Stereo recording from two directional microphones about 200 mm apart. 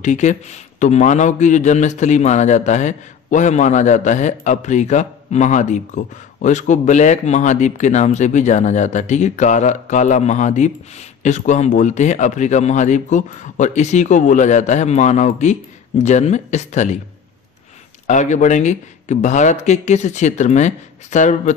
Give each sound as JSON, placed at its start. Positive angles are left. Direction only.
{"t": 0.0, "sound": "a man's voice", "side_deg": 35}
{"t": 18.0, "sound": "a man's voice", "side_deg": 35}